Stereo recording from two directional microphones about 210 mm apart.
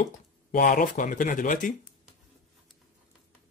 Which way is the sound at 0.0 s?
40° left (ahead or behind).